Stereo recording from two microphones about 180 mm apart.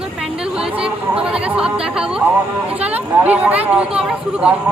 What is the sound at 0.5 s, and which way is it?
Chatter, 5° right (ahead or behind).